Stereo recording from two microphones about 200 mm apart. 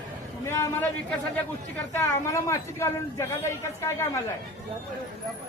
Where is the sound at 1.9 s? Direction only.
10° left (ahead or behind).